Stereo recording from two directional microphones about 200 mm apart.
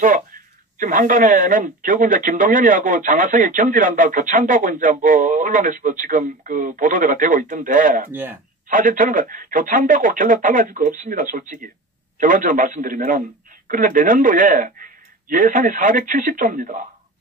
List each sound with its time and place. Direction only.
0.7 s speech: 40° right (ahead or behind)
8.1 s speech: 10° right (ahead or behind)
8.6 s speech: 40° right (ahead or behind)